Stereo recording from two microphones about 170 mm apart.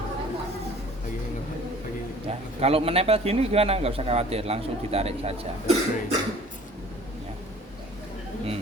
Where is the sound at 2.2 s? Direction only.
35° right (ahead or behind).